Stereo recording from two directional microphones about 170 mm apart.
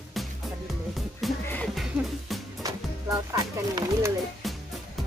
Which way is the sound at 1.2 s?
Centre (ahead or behind).